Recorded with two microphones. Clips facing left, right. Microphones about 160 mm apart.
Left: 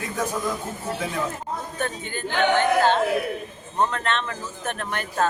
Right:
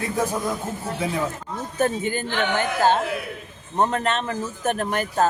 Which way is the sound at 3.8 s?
35° right (ahead or behind).